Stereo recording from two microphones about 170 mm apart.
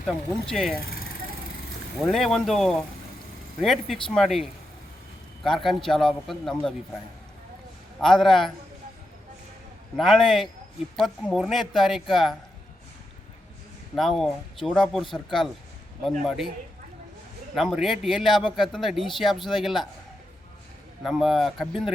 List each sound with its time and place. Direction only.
0.0 s a man's voice: centre (ahead or behind)
0.7 s speech: 60° left (ahead or behind)
2.0 s a man's voice: centre (ahead or behind)
7.9 s a man's voice: centre (ahead or behind)
10.0 s a man's voice: centre (ahead or behind)
13.9 s a man's voice: centre (ahead or behind)
17.5 s a man's voice: centre (ahead or behind)
21.0 s a man's voice: centre (ahead or behind)